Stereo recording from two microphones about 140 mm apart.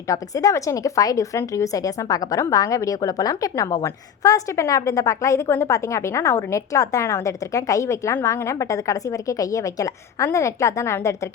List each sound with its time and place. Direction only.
0.1 s a woman's voice: 25° left (ahead or behind)